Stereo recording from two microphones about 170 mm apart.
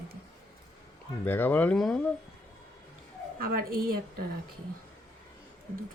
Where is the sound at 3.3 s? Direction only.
60° right (ahead or behind).